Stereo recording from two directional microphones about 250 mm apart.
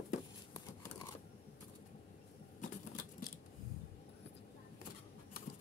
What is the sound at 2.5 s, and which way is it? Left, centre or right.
Vehicle, left.